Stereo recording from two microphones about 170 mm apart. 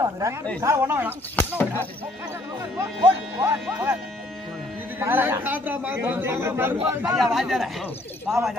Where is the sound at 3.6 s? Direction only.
10° right (ahead or behind).